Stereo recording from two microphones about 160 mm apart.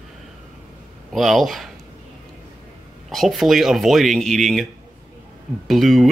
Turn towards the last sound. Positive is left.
turn(degrees=0)  # may be behind; listen again after turning